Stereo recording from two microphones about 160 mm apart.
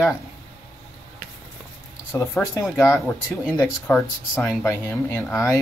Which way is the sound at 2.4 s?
10° left (ahead or behind).